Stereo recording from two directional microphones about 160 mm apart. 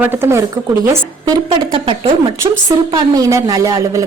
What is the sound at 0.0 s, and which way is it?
A woman's voice, 15° right (ahead or behind).